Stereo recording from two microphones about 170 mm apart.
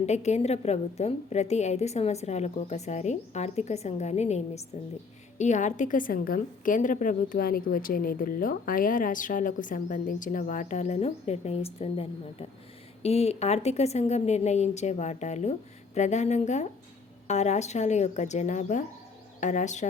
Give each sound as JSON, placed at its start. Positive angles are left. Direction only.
{"t": 0.0, "sound": "a woman's voice", "side_deg": 40}